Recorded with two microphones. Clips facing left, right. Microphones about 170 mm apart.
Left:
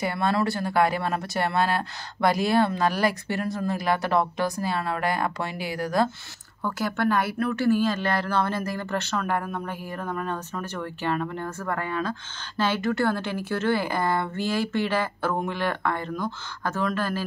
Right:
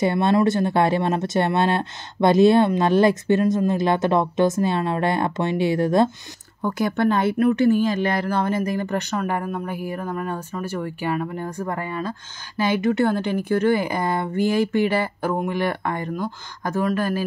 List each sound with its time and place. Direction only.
0.0 s speech: 25° right (ahead or behind)